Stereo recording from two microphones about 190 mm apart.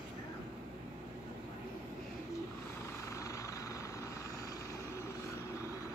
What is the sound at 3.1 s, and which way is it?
Vehicle, 15° left (ahead or behind).